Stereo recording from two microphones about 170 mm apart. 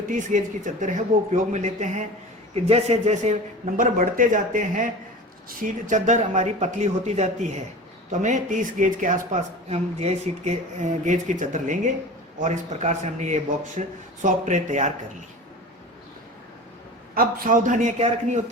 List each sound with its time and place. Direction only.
0.1 s a man's voice: 50° right (ahead or behind)
3.8 s speech: 55° right (ahead or behind)
17.2 s speech: 55° right (ahead or behind)